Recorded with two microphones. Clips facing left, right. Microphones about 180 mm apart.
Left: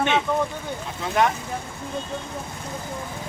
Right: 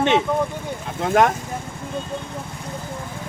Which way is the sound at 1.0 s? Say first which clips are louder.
Right 5 dB; 50° right (ahead or behind).